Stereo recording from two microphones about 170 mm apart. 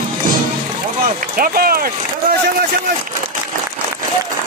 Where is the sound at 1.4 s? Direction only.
60° right (ahead or behind).